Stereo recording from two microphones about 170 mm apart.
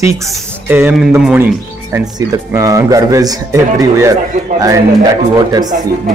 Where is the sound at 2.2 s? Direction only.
20° right (ahead or behind).